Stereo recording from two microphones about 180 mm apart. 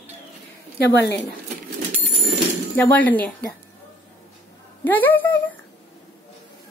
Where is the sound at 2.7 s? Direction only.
10° left (ahead or behind).